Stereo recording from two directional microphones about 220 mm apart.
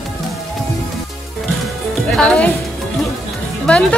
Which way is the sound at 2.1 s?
5° left (ahead or behind).